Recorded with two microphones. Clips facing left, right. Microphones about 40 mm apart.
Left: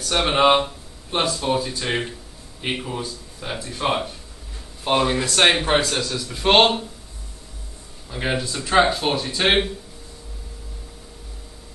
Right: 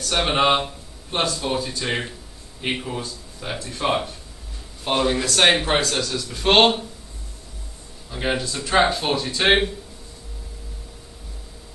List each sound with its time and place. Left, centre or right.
0.1 s speech: centre
3.5 s speech: centre
3.8 s speech: centre
8.1 s speech: centre